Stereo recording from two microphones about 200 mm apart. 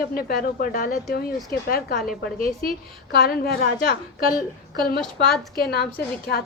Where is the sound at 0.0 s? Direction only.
50° left (ahead or behind).